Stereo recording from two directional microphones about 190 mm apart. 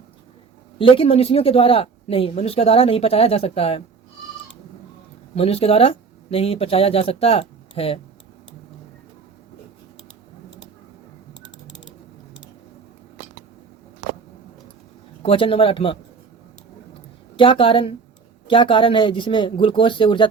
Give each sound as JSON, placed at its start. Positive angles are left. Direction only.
{"t": 0.8, "sound": "speech", "side_deg": 30}
{"t": 5.3, "sound": "speech", "side_deg": 30}
{"t": 15.2, "sound": "speech", "side_deg": 30}
{"t": 17.3, "sound": "speech", "side_deg": 25}